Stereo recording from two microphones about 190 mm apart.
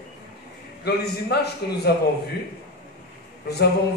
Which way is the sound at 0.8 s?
60° left (ahead or behind).